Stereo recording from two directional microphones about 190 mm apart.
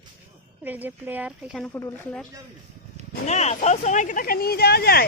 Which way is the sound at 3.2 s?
35° left (ahead or behind).